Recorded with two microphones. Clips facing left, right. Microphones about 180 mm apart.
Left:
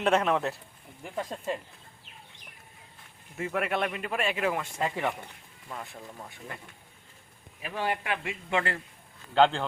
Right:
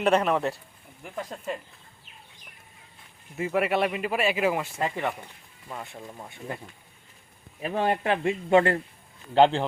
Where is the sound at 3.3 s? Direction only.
5° right (ahead or behind).